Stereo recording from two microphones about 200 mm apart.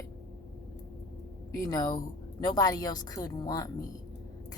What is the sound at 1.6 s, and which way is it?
A woman's voice, 20° left (ahead or behind).